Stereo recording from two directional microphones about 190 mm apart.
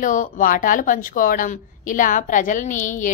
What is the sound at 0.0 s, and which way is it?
Speech, 45° left (ahead or behind).